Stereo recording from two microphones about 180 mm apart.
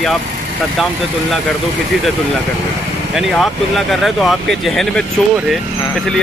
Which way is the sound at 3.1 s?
Centre (ahead or behind).